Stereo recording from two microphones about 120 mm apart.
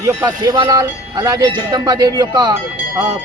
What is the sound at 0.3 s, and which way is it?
A man's voice, 40° right (ahead or behind).